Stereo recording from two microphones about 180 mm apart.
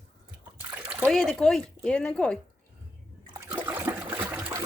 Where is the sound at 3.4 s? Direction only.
10° right (ahead or behind).